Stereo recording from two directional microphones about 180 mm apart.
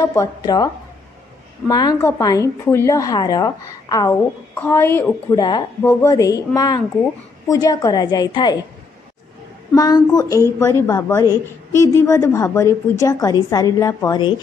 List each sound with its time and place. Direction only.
0.0 s a woman's voice: 20° left (ahead or behind)
1.7 s a woman's voice: 20° left (ahead or behind)
9.8 s a woman's voice: 20° left (ahead or behind)